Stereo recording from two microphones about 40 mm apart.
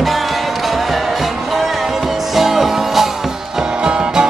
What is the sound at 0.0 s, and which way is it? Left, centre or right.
Music, centre.